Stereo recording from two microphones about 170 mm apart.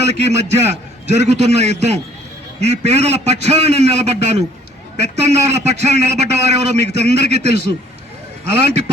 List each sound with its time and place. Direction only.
0.0 s a man's voice: 40° right (ahead or behind)